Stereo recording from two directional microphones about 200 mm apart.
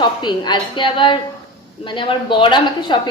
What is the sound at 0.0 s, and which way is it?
A woman's voice, 20° left (ahead or behind).